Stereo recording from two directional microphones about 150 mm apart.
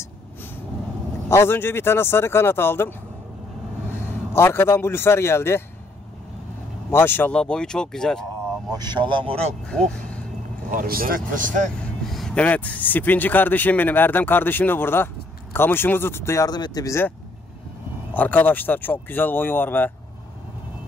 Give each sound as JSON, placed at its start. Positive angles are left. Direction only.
{"t": 1.3, "sound": "speech", "side_deg": 15}
{"t": 4.3, "sound": "speech", "side_deg": 15}
{"t": 6.9, "sound": "speech", "side_deg": 15}
{"t": 8.7, "sound": "speech", "side_deg": -30}
{"t": 9.7, "sound": "speech", "side_deg": 5}
{"t": 10.7, "sound": "speech", "side_deg": -70}
{"t": 12.1, "sound": "speech", "side_deg": 5}
{"t": 18.1, "sound": "speech", "side_deg": 10}